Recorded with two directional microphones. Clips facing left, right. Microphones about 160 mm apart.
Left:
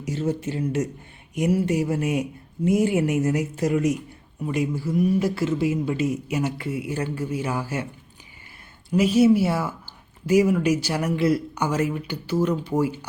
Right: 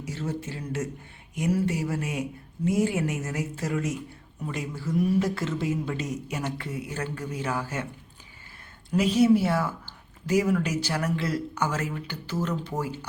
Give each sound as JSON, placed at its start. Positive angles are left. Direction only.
{"t": 0.0, "sound": "speech", "side_deg": 20}
{"t": 9.0, "sound": "speech", "side_deg": 5}